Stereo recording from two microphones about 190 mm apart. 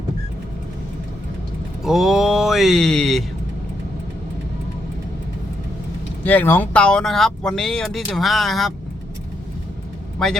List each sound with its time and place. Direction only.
1.8 s speech: centre (ahead or behind)
6.2 s speech: 10° left (ahead or behind)
10.2 s speech: centre (ahead or behind)